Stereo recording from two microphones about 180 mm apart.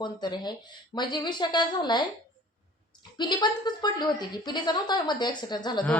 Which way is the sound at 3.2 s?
25° left (ahead or behind).